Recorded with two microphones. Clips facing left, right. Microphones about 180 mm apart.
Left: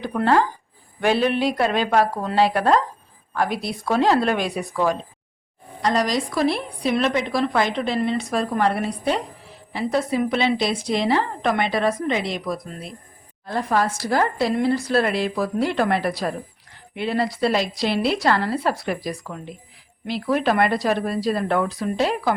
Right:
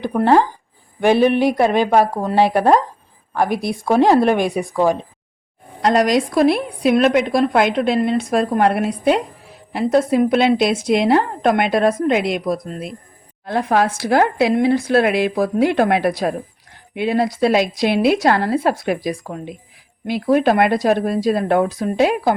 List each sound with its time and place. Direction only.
0.1 s a woman's voice: 50° right (ahead or behind)
5.8 s a woman's voice: 60° right (ahead or behind)